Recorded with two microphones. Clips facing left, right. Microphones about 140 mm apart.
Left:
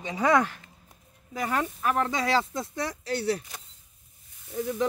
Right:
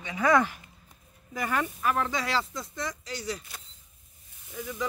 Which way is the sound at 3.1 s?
60° left (ahead or behind).